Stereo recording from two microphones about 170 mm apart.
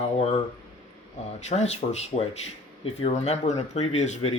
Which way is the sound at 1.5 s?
40° left (ahead or behind).